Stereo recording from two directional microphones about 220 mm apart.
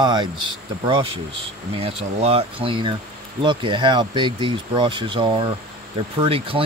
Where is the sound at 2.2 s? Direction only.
25° right (ahead or behind).